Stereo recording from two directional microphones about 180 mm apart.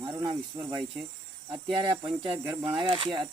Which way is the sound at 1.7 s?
30° right (ahead or behind).